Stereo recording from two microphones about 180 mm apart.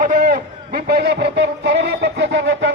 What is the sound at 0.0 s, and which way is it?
A man's voice, 50° right (ahead or behind).